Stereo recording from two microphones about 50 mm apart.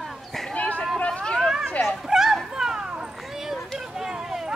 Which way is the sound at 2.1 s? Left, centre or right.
Centre.